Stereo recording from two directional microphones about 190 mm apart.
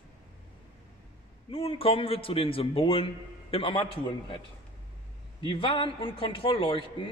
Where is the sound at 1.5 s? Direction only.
30° left (ahead or behind).